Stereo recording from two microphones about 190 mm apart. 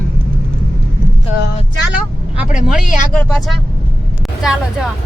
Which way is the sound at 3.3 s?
Centre (ahead or behind).